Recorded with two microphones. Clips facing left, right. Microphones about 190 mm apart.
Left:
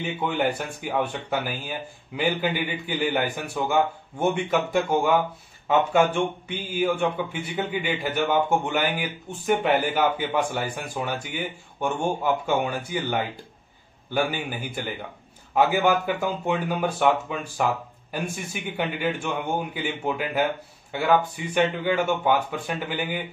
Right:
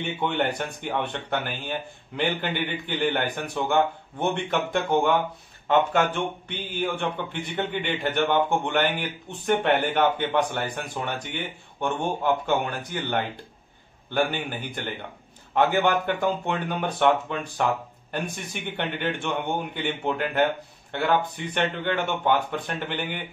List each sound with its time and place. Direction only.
0.0 s a man's voice: centre (ahead or behind)